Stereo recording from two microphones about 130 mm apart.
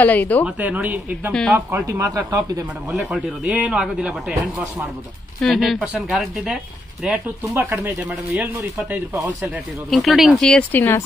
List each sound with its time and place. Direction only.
0.0 s speech: 15° left (ahead or behind)
0.6 s speech: 10° right (ahead or behind)
1.9 s speech: 25° right (ahead or behind)
2.9 s speech: centre (ahead or behind)
7.4 s speech: 20° right (ahead or behind)
8.4 s speech: 10° right (ahead or behind)
9.8 s speech: centre (ahead or behind)
10.7 s speech: 15° left (ahead or behind)